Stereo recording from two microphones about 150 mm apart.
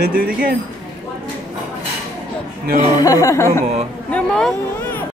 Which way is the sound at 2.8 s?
25° left (ahead or behind).